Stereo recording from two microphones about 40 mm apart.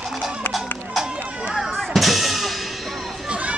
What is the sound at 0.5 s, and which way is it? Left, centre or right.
Music, centre.